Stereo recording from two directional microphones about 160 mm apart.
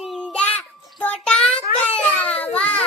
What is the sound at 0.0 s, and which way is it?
Child singing, centre (ahead or behind).